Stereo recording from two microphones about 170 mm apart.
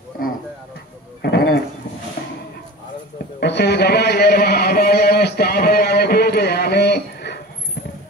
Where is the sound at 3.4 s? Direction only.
75° left (ahead or behind).